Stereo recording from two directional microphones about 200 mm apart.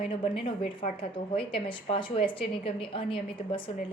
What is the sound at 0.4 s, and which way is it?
A woman's voice, 25° left (ahead or behind).